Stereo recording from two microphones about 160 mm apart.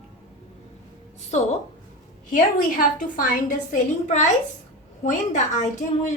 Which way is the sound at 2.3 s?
60° left (ahead or behind).